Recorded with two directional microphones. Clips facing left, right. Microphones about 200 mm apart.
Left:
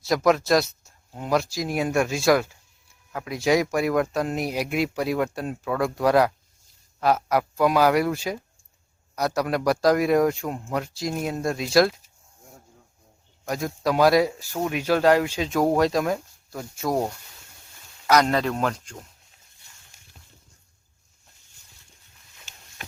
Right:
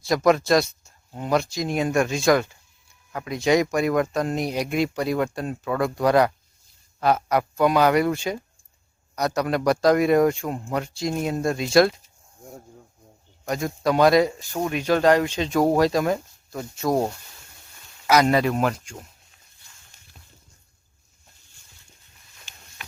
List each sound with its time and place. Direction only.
0.0 s speech: centre (ahead or behind)
13.4 s speech: centre (ahead or behind)
18.0 s speech: 10° right (ahead or behind)
22.8 s a sound: 45° left (ahead or behind)